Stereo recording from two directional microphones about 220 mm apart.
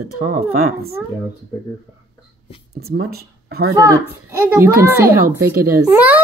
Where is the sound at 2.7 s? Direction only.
45° right (ahead or behind).